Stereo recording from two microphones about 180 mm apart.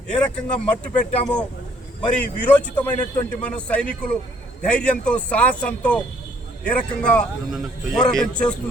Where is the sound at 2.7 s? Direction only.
10° left (ahead or behind).